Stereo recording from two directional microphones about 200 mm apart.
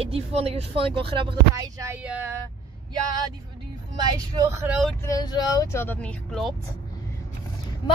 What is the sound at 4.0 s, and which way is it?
Speech, 15° right (ahead or behind).